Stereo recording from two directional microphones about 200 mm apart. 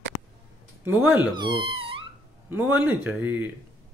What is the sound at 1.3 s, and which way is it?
Speech, 25° right (ahead or behind).